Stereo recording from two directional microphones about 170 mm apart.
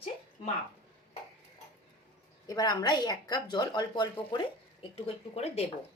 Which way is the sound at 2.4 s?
25° left (ahead or behind).